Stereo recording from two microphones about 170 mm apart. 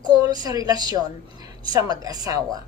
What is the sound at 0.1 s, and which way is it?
A woman's voice, 25° right (ahead or behind).